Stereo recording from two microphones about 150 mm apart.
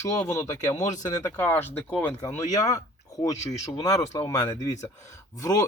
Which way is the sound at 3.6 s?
20° left (ahead or behind).